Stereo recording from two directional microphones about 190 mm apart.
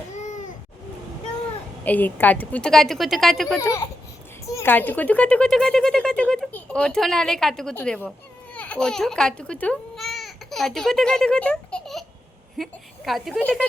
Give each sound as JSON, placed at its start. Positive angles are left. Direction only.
{"t": 0.1, "sound": "a sound", "side_deg": 40}
{"t": 1.8, "sound": "speech", "side_deg": 10}
{"t": 3.6, "sound": "a child's voice", "side_deg": 15}